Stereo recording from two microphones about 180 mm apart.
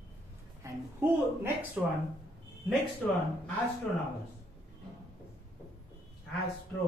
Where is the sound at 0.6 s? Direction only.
15° right (ahead or behind).